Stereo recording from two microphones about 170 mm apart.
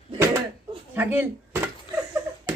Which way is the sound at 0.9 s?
15° right (ahead or behind).